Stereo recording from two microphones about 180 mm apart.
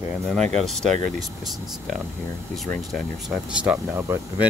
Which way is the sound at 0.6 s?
Centre (ahead or behind).